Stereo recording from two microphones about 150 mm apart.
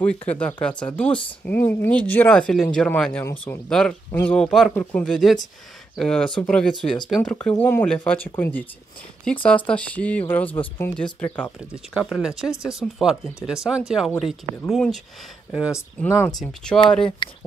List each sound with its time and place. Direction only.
0.0 s speech: 10° left (ahead or behind)
11.7 s speech: 5° right (ahead or behind)
15.7 s speech: 20° left (ahead or behind)
16.3 s speech: centre (ahead or behind)
17.2 s speech: 30° left (ahead or behind)